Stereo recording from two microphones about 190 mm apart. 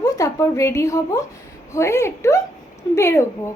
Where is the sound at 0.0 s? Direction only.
15° left (ahead or behind).